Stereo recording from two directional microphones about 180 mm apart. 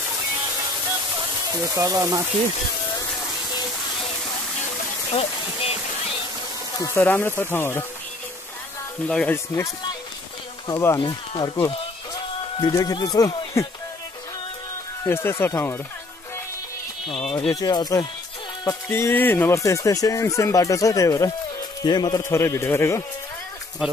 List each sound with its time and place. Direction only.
1.1 s speech: 20° right (ahead or behind)
5.1 s a sound: 30° left (ahead or behind)
6.8 s speech: 15° left (ahead or behind)
9.0 s speech: 5° left (ahead or behind)
10.7 s speech: 15° left (ahead or behind)
11.0 s speech: 25° left (ahead or behind)
12.5 s speech: 20° left (ahead or behind)
15.0 s speech: 15° left (ahead or behind)
17.5 s speech: 20° left (ahead or behind)
23.8 s speech: 5° right (ahead or behind)